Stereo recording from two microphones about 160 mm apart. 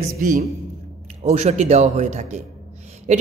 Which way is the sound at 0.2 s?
55° right (ahead or behind).